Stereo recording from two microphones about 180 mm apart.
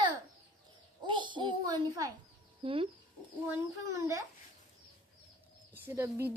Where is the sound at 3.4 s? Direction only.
15° right (ahead or behind).